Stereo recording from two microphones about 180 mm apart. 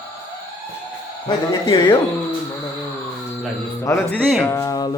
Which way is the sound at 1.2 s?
25° left (ahead or behind).